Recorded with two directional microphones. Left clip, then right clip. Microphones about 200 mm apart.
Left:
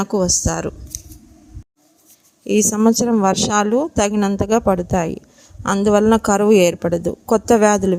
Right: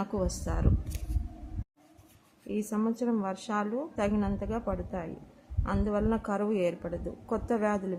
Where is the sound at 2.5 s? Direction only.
55° left (ahead or behind).